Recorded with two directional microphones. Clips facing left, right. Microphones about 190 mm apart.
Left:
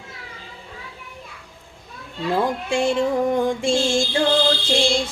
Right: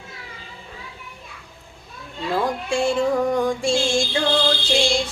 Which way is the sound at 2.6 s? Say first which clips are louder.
Right 2 dB; 20° left (ahead or behind).